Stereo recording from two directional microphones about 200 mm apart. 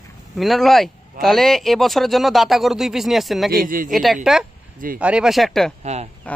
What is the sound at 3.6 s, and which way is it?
Speech, 45° right (ahead or behind).